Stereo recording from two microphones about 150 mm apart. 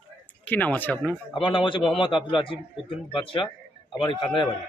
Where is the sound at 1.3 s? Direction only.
35° left (ahead or behind).